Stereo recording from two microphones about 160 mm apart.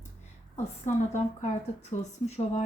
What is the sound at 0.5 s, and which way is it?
A woman's voice, 50° left (ahead or behind).